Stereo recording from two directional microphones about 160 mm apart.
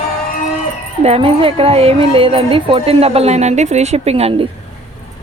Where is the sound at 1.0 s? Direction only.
35° right (ahead or behind).